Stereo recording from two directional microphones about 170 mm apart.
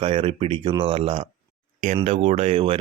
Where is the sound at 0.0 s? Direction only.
35° right (ahead or behind).